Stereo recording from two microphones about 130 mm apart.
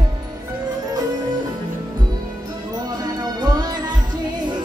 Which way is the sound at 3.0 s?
30° right (ahead or behind).